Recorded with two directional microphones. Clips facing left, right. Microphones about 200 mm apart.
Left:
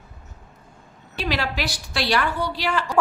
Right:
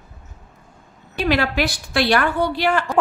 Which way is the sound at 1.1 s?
55° right (ahead or behind).